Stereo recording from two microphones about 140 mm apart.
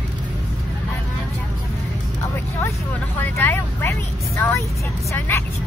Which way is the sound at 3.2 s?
15° left (ahead or behind).